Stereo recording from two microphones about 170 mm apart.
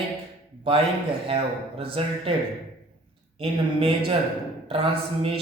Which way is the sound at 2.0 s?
30° right (ahead or behind).